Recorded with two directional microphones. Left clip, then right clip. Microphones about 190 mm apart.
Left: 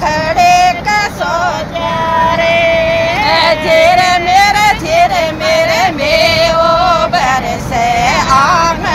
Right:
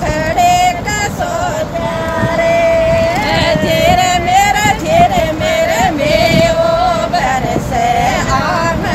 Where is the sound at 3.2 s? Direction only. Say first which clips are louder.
Left 3 dB; 20° right (ahead or behind).